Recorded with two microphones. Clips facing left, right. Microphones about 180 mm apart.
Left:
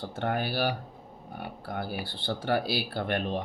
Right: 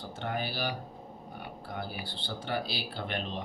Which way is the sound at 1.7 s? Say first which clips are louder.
Left 4 dB; 55° left (ahead or behind).